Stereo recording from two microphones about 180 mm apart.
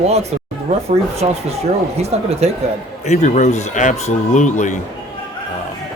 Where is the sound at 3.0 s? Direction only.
40° left (ahead or behind).